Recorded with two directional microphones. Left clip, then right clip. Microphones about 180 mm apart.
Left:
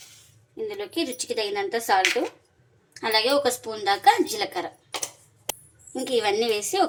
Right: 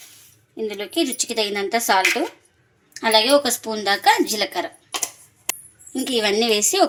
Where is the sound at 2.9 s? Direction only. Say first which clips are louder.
Right 6 dB; 55° right (ahead or behind).